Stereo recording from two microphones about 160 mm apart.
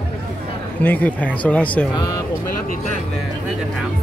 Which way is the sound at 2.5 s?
60° left (ahead or behind).